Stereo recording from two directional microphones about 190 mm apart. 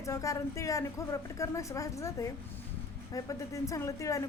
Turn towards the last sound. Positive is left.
turn(degrees=15)  # may be behind; listen again after turning